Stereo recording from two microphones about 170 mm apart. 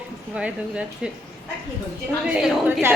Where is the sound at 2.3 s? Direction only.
5° right (ahead or behind).